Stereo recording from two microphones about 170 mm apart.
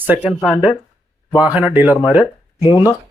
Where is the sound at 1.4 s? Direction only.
10° right (ahead or behind).